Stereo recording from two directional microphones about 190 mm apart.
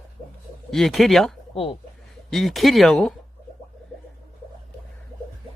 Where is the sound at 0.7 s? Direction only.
Centre (ahead or behind).